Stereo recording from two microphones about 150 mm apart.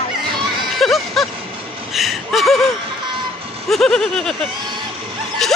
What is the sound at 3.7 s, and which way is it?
Speech, 5° left (ahead or behind).